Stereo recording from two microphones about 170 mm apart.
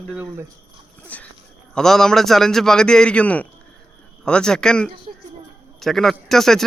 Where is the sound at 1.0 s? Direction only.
10° left (ahead or behind).